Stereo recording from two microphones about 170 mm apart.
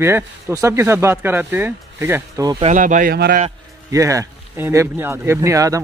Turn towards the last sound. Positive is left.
turn(degrees=-20)  # may be behind; listen again after turning